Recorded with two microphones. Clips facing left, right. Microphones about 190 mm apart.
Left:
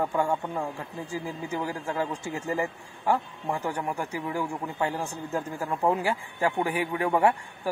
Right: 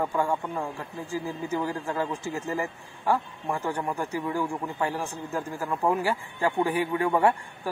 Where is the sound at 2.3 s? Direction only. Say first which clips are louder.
Left 1 dB; 15° left (ahead or behind).